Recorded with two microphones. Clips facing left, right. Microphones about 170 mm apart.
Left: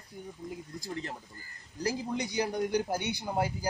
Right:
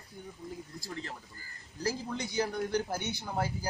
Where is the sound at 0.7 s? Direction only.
15° left (ahead or behind).